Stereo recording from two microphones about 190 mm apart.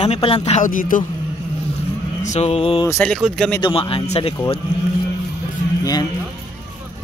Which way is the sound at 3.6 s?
30° left (ahead or behind).